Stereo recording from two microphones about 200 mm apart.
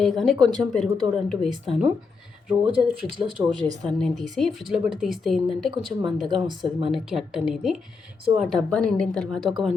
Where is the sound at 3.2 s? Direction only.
15° right (ahead or behind).